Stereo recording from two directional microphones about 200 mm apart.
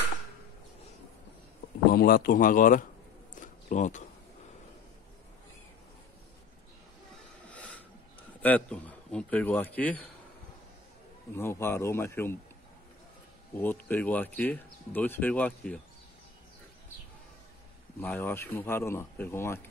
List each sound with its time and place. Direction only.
1.9 s speech: 50° left (ahead or behind)
3.3 s a sound: 40° left (ahead or behind)
7.4 s a sound: 5° left (ahead or behind)
8.4 s speech: 5° left (ahead or behind)
11.3 s speech: 10° left (ahead or behind)
13.6 s speech: 10° left (ahead or behind)
18.0 s speech: 10° left (ahead or behind)